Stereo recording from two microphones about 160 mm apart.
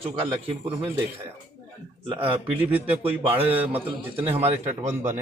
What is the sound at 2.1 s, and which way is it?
Speech, 30° right (ahead or behind).